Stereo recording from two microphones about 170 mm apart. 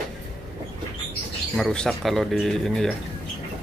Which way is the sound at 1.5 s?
5° left (ahead or behind).